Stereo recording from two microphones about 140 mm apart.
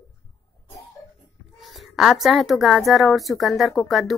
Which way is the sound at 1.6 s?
Centre (ahead or behind).